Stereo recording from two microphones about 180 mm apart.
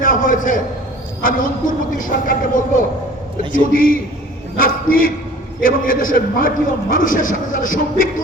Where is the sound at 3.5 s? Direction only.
50° left (ahead or behind).